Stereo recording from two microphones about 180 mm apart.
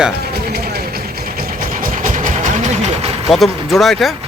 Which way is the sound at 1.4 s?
50° right (ahead or behind).